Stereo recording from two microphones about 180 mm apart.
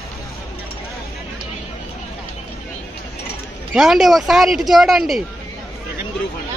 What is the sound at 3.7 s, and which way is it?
A man's voice, centre (ahead or behind).